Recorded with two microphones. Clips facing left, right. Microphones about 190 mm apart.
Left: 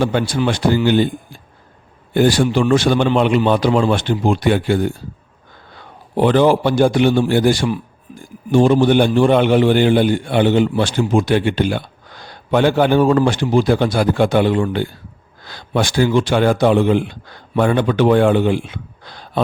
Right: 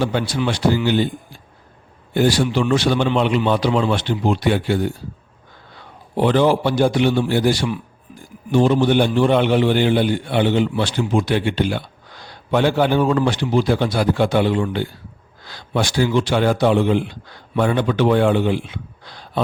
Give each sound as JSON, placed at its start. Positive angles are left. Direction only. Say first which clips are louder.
{"t": 0.0, "sound": "a man's voice", "louder": "left 3 dB", "side_deg": 50}
{"t": 6.1, "sound": "a man's voice", "louder": "left 3 dB", "side_deg": 50}